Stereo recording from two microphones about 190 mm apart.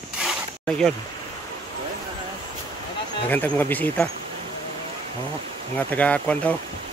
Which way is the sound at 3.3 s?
10° left (ahead or behind).